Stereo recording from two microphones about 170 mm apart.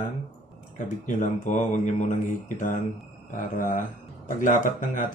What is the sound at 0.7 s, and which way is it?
Speech, 45° left (ahead or behind).